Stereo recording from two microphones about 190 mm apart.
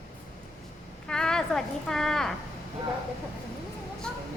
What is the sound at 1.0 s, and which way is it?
Speech, 5° left (ahead or behind).